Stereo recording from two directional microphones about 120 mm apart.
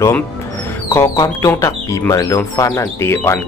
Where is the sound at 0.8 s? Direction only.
20° left (ahead or behind).